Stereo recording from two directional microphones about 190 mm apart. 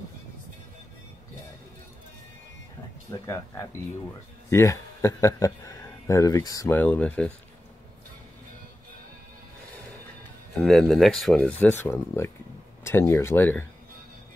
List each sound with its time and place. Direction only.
3.1 s a man's voice: 15° left (ahead or behind)
10.6 s speech: centre (ahead or behind)